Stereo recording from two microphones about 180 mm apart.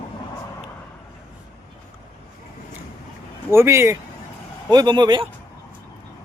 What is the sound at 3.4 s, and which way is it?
A man's voice, 15° right (ahead or behind).